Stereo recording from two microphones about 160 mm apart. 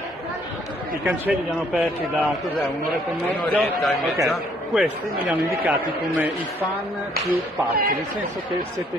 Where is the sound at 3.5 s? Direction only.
Centre (ahead or behind).